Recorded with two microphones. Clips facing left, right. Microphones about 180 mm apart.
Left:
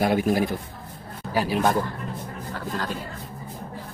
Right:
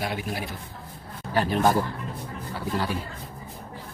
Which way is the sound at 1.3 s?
5° left (ahead or behind).